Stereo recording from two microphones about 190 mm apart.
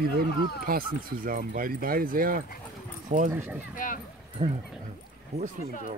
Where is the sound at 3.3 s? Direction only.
10° right (ahead or behind).